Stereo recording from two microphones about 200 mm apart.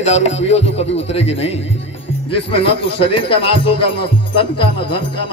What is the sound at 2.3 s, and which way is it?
Speech, 30° left (ahead or behind).